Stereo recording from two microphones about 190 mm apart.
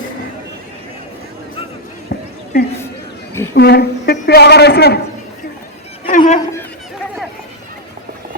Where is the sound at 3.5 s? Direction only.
60° left (ahead or behind).